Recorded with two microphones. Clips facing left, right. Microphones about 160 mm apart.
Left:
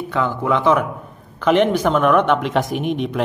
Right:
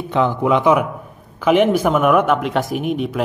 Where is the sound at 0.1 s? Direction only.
20° right (ahead or behind).